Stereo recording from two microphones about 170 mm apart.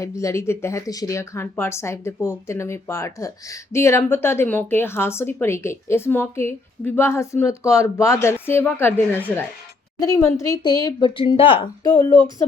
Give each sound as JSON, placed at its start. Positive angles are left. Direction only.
{"t": 0.0, "sound": "a woman's voice", "side_deg": 20}